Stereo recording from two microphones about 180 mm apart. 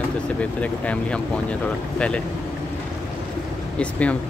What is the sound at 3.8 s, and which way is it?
Speech, 5° left (ahead or behind).